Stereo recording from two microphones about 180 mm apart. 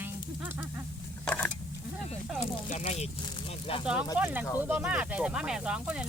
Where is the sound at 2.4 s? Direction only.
40° left (ahead or behind).